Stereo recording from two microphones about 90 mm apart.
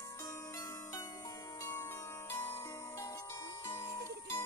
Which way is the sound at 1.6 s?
45° left (ahead or behind).